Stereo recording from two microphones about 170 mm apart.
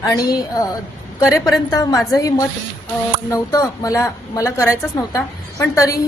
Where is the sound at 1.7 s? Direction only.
20° left (ahead or behind).